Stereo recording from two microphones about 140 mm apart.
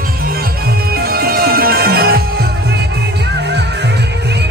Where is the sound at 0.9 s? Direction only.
90° right.